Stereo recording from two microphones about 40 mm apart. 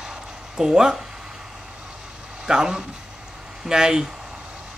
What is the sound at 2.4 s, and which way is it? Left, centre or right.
Speech, centre.